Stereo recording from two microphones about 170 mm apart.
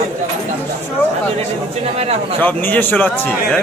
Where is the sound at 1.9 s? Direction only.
35° right (ahead or behind).